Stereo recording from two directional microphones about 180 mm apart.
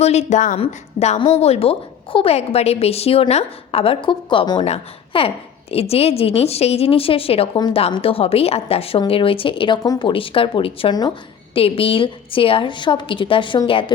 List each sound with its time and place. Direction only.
0.0 s a woman's voice: 35° left (ahead or behind)